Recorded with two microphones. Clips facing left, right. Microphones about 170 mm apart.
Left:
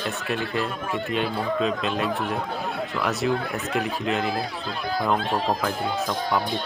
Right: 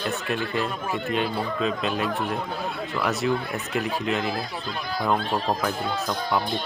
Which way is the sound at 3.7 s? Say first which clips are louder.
Even; centre (ahead or behind).